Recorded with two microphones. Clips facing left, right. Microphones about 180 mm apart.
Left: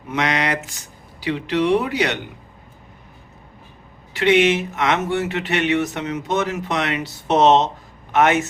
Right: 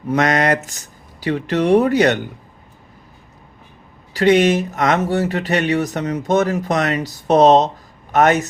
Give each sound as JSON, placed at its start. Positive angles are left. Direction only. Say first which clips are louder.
{"t": 0.1, "sound": "speech", "louder": "right 5 dB", "side_deg": -45}
{"t": 4.1, "sound": "speech", "louder": "right 3 dB", "side_deg": -40}